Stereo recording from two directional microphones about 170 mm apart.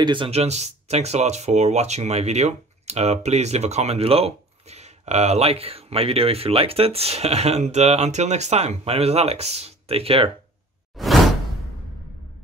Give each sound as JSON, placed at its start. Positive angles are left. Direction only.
{"t": 0.0, "sound": "speech", "side_deg": -30}
{"t": 11.0, "sound": "whoosh", "side_deg": 0}